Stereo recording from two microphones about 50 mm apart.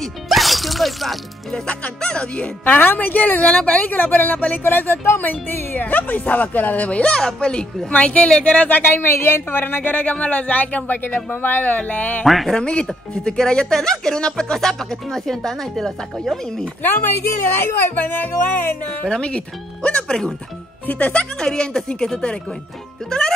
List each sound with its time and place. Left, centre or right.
0.3 s music: centre
2.0 s speech: centre
2.6 s a woman's voice: left
3.5 s a woman's voice: left
12.3 s speech: centre
12.5 s speech: centre
16.8 s a woman's voice: left
19.0 s speech: left
20.8 s speech: left
21.4 s speech: centre